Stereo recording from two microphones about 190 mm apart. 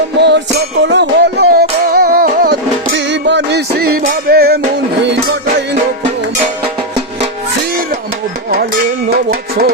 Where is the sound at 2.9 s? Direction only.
70° right (ahead or behind).